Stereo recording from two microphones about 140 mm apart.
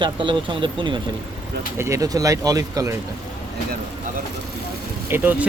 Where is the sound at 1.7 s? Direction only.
20° right (ahead or behind).